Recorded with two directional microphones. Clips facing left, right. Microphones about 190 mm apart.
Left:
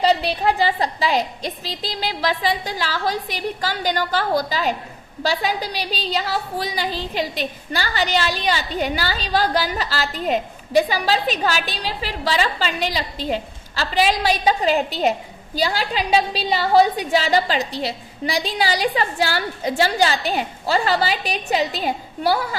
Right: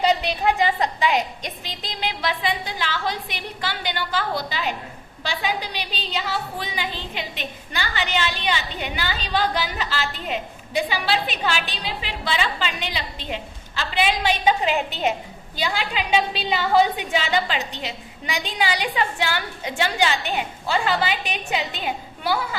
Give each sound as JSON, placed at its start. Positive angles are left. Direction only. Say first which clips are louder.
{"t": 0.0, "sound": "a woman's voice", "louder": "left 2 dB", "side_deg": 35}